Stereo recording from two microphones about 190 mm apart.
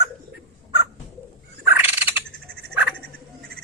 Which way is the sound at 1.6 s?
10° right (ahead or behind).